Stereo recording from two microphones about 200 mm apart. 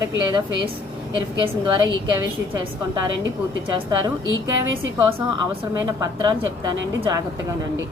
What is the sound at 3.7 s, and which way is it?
Speech, 20° right (ahead or behind).